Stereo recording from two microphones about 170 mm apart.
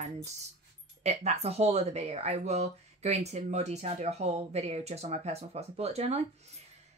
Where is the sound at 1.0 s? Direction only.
40° right (ahead or behind).